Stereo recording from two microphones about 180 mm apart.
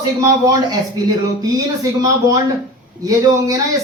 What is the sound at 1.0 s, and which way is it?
Speech, 20° right (ahead or behind).